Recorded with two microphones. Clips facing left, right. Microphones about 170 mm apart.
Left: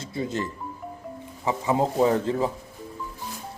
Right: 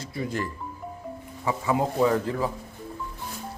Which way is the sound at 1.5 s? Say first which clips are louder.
Left 2 dB; 25° left (ahead or behind).